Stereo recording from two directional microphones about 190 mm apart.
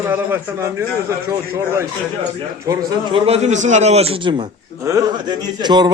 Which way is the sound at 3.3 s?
35° right (ahead or behind).